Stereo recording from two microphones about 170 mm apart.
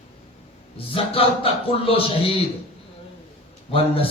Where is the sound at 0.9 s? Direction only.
35° left (ahead or behind).